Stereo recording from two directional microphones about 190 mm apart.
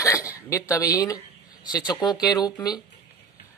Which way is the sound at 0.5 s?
15° left (ahead or behind).